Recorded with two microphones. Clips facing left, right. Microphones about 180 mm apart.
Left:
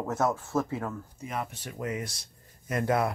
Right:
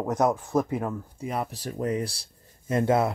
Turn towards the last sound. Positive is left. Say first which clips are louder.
# right 4 dB
turn(degrees=-25)  # may be behind; listen again after turning